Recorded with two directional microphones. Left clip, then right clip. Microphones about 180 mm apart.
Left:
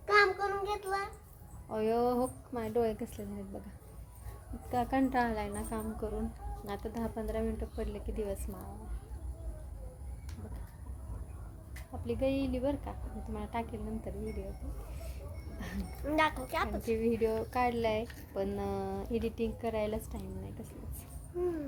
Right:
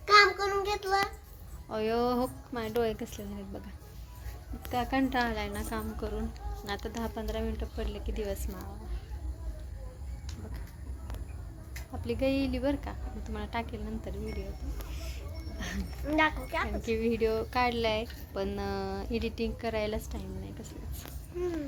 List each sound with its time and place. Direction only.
0.0 s child singing: 20° right (ahead or behind)
1.7 s a woman's voice: centre (ahead or behind)
4.7 s a woman's voice: 5° left (ahead or behind)
12.0 s a woman's voice: 10° right (ahead or behind)
15.5 s a sound: centre (ahead or behind)
15.8 s speech: 70° left (ahead or behind)
16.6 s a woman's voice: centre (ahead or behind)